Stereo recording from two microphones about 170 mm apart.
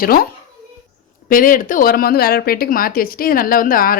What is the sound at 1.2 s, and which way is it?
A woman's voice, 55° left (ahead or behind).